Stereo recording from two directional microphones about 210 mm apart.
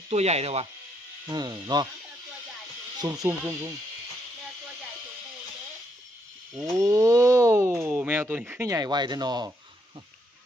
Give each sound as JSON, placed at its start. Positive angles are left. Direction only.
{"t": 0.1, "sound": "speech", "side_deg": -30}
{"t": 1.3, "sound": "speech", "side_deg": -20}
{"t": 3.0, "sound": "speech", "side_deg": -15}
{"t": 6.8, "sound": "speech", "side_deg": -15}